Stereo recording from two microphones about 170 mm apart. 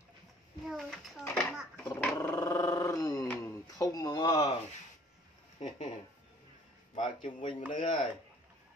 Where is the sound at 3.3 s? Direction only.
20° left (ahead or behind).